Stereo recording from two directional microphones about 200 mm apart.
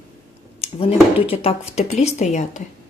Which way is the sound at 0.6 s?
30° left (ahead or behind).